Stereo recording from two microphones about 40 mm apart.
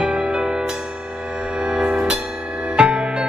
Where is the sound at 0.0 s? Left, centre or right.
Right.